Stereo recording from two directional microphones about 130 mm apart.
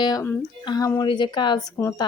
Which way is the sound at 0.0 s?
30° left (ahead or behind).